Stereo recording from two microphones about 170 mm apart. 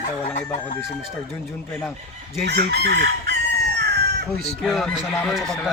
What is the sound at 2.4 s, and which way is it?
Chicken, 75° right (ahead or behind).